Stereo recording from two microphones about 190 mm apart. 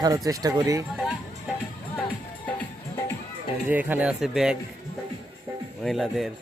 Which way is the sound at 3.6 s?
10° right (ahead or behind).